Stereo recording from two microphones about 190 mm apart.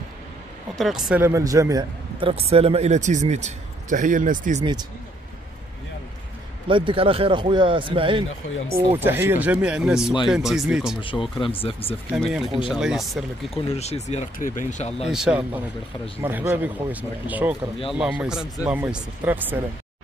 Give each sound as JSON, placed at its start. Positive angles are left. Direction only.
{"t": 0.7, "sound": "speech", "side_deg": 0}
{"t": 1.2, "sound": "a man's voice", "side_deg": -15}
{"t": 6.7, "sound": "a man's voice", "side_deg": -25}
{"t": 8.9, "sound": "speech", "side_deg": -10}
{"t": 11.0, "sound": "speech", "side_deg": 25}
{"t": 12.2, "sound": "speech", "side_deg": 0}
{"t": 13.7, "sound": "speech", "side_deg": 35}
{"t": 15.0, "sound": "speech", "side_deg": -5}